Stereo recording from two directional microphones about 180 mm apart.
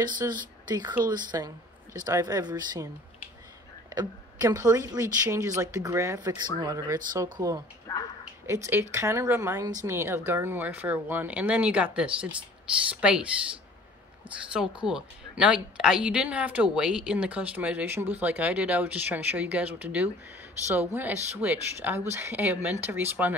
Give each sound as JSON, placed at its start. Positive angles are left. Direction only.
{"t": 0.0, "sound": "speech", "side_deg": -25}
{"t": 3.9, "sound": "speech", "side_deg": -20}
{"t": 8.6, "sound": "speech", "side_deg": -15}
{"t": 14.5, "sound": "a woman's voice", "side_deg": -5}